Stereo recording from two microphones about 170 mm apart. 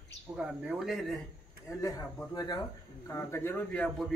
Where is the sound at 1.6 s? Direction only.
20° left (ahead or behind).